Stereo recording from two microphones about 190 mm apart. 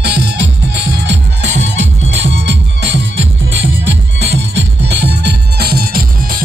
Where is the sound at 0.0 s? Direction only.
65° right (ahead or behind).